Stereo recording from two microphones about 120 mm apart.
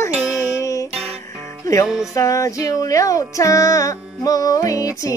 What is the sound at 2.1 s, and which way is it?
Music, 25° left (ahead or behind).